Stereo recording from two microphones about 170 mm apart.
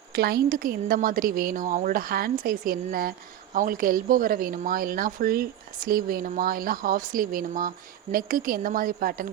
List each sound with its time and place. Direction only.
0.2 s speech: 60° right (ahead or behind)